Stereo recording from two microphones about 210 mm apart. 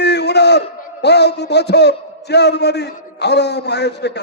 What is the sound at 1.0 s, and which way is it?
A man's voice, 55° left (ahead or behind).